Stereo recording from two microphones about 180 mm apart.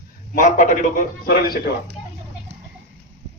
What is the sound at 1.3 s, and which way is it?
Speech, 55° left (ahead or behind).